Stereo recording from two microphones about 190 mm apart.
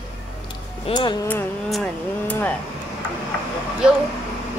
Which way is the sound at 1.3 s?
5° left (ahead or behind).